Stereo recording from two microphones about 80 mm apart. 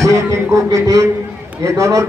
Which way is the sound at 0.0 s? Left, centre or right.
Right.